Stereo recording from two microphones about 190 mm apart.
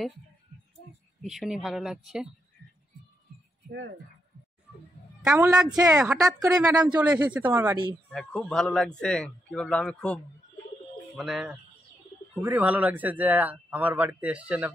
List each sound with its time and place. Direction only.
1.2 s a man's voice: centre (ahead or behind)
5.2 s a man's voice: 5° right (ahead or behind)
5.7 s speech: 20° right (ahead or behind)
6.9 s a man's voice: 10° right (ahead or behind)
8.1 s a man's voice: 5° left (ahead or behind)